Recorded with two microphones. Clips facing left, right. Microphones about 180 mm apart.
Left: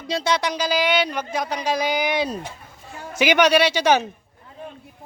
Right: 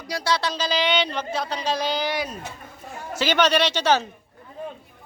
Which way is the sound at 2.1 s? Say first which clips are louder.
Left 5 dB; 30° left (ahead or behind).